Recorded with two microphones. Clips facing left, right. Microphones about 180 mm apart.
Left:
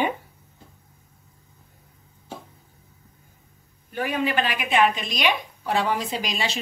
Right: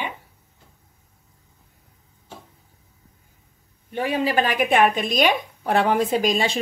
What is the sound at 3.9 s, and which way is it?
A woman's voice, 30° right (ahead or behind).